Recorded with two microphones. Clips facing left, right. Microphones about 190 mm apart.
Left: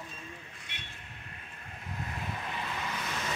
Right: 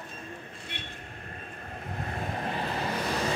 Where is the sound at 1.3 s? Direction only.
45° right (ahead or behind).